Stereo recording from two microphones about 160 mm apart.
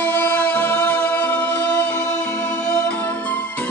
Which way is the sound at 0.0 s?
10° left (ahead or behind).